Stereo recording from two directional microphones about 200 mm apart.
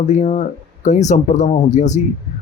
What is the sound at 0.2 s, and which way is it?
Speech, 35° left (ahead or behind).